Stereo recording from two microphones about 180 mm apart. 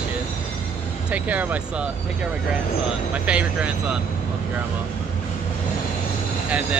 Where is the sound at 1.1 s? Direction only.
10° right (ahead or behind).